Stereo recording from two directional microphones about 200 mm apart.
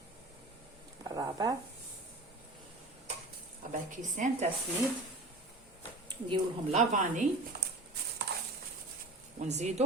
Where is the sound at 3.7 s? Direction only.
40° right (ahead or behind).